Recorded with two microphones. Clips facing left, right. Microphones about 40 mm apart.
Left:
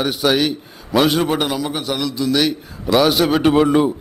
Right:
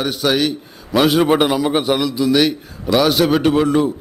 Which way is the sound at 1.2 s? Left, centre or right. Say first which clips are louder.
Right 5 dB; centre.